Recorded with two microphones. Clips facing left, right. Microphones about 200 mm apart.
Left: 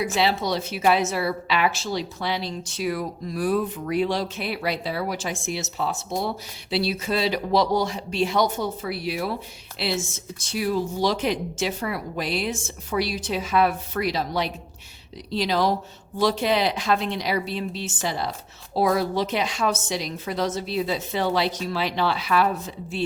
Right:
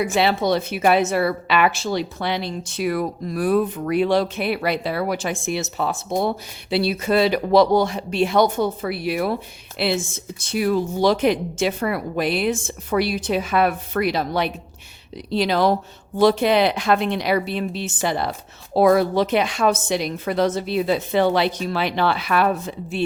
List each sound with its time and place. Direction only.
0.0 s a woman's voice: 55° right (ahead or behind)